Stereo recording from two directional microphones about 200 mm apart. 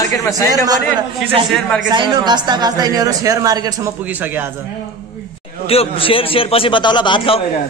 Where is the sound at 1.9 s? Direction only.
20° right (ahead or behind).